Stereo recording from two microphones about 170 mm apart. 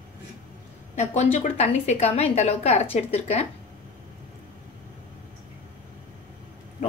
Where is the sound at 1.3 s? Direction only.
40° left (ahead or behind).